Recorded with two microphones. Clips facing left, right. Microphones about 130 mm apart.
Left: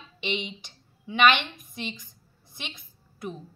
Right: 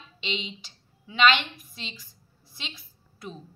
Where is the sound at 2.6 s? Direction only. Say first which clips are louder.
Left 1 dB; 55° left (ahead or behind).